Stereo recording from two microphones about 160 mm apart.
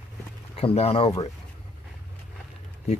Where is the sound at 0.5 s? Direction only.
40° left (ahead or behind).